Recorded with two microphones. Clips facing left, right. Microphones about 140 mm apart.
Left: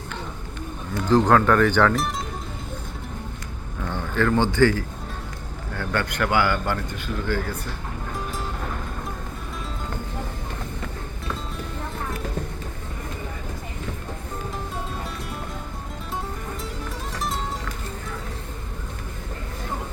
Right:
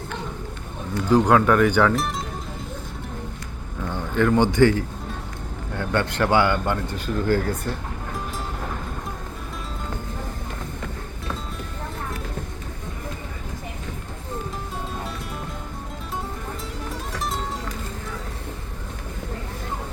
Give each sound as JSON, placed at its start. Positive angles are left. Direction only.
{"t": 1.0, "sound": "speech", "side_deg": -10}
{"t": 3.8, "sound": "a man's voice", "side_deg": -15}
{"t": 6.9, "sound": "speech", "side_deg": -45}
{"t": 17.2, "sound": "music", "side_deg": 0}